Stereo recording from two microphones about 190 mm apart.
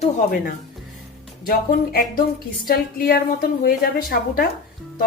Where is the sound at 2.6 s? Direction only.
55° left (ahead or behind).